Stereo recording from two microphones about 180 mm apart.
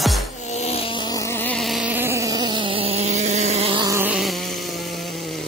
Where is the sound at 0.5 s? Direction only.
35° left (ahead or behind); by 3.8 s 35° right (ahead or behind).